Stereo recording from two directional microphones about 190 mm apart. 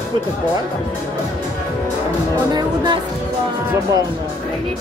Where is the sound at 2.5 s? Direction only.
25° right (ahead or behind).